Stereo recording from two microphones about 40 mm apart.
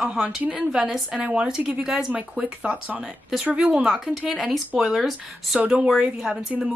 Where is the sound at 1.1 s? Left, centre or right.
Right.